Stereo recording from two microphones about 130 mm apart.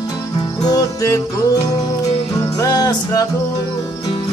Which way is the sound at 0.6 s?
30° left (ahead or behind).